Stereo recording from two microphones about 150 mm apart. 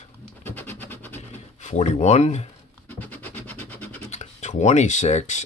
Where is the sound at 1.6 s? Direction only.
50° left (ahead or behind).